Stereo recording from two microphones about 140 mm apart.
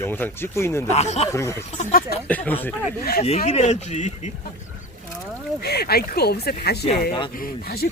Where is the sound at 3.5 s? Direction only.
55° left (ahead or behind).